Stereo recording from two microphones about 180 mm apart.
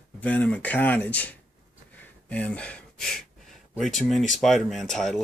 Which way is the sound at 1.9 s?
5° left (ahead or behind).